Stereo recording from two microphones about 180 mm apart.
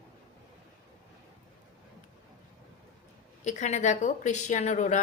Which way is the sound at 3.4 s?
40° left (ahead or behind).